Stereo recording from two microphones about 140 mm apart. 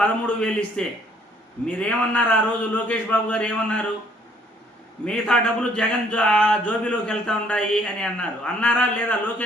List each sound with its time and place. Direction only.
0.0 s a man's voice: 10° left (ahead or behind)
5.0 s a man's voice: 5° left (ahead or behind)